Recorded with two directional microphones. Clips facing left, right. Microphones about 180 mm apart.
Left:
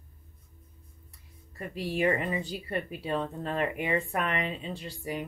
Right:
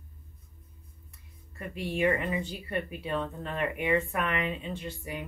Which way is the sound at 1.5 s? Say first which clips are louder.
Left 1 dB; 35° left (ahead or behind).